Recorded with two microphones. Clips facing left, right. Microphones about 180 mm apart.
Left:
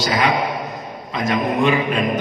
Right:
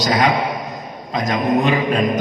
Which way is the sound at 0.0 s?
40° right (ahead or behind).